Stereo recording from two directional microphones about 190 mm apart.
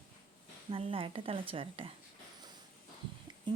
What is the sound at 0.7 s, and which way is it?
Speech, 30° right (ahead or behind).